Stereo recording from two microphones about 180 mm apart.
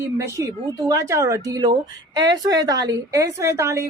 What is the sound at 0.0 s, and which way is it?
A woman's voice, 15° right (ahead or behind).